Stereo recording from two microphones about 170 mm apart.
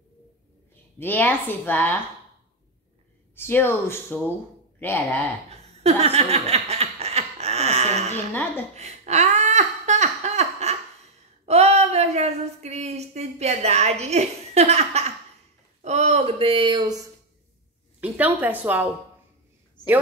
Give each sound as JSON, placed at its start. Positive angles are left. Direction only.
{"t": 0.9, "sound": "a woman's voice", "side_deg": 10}
{"t": 3.3, "sound": "a woman's voice", "side_deg": 15}
{"t": 5.5, "sound": "a sound", "side_deg": -40}
{"t": 11.4, "sound": "speech", "side_deg": -40}
{"t": 18.0, "sound": "a woman's voice", "side_deg": -10}
{"t": 19.8, "sound": "a woman's voice", "side_deg": 25}